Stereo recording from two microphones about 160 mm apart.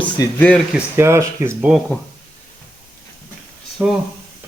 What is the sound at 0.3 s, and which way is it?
Speech, 10° left (ahead or behind).